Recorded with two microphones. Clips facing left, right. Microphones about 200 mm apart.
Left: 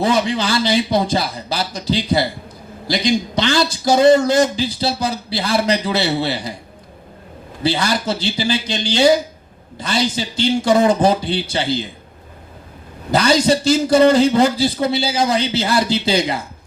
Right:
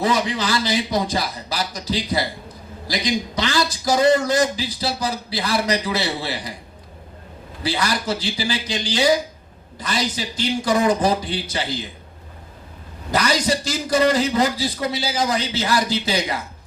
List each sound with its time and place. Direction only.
0.0 s a man's voice: 30° left (ahead or behind)
7.6 s a man's voice: 25° left (ahead or behind)
13.1 s a man's voice: 30° left (ahead or behind)